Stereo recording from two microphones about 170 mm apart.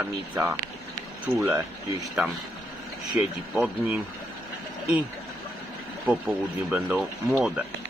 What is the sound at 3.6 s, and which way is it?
Speech, 10° right (ahead or behind).